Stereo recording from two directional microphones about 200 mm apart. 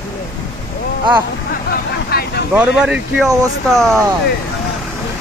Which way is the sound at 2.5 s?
5° right (ahead or behind).